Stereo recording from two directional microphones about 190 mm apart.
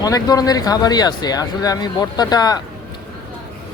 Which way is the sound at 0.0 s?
20° left (ahead or behind).